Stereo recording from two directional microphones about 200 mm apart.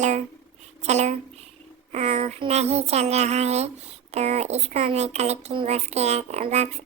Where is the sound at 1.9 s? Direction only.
30° right (ahead or behind).